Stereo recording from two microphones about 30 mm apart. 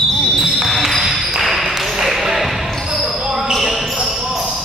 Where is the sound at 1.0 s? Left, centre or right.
Centre.